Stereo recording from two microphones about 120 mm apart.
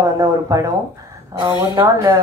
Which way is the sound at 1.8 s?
30° right (ahead or behind).